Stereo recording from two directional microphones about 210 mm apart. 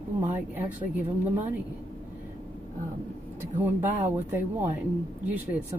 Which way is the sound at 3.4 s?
10° right (ahead or behind).